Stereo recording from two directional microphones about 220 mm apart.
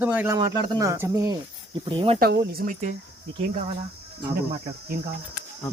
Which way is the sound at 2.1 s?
45° right (ahead or behind).